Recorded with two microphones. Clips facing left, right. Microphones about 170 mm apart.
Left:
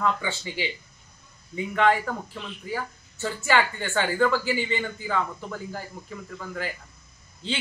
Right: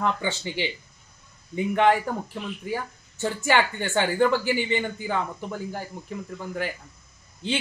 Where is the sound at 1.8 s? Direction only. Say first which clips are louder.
Right 1 dB; 20° right (ahead or behind).